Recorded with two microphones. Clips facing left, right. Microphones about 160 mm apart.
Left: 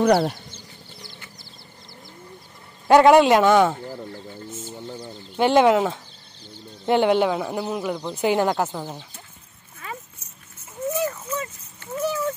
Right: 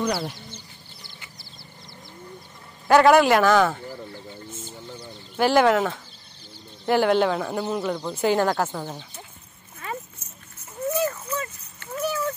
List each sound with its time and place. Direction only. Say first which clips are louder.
0.0 s speech: left 8 dB; 60° left (ahead or behind)
2.9 s speech: left 2 dB; 20° left (ahead or behind)
11.2 s a sound: left 1 dB; 20° left (ahead or behind)